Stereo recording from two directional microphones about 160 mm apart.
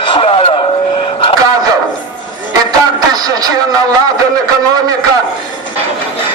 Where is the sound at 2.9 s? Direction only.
25° right (ahead or behind).